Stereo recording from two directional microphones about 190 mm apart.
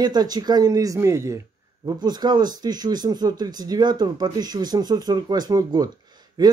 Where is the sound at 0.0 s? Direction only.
20° right (ahead or behind).